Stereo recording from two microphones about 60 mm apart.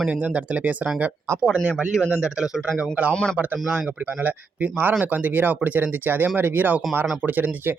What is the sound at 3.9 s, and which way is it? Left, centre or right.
Speech, right.